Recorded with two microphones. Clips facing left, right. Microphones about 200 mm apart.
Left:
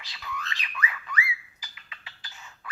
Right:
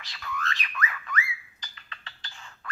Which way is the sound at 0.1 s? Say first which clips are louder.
Right 3 dB; 15° left (ahead or behind).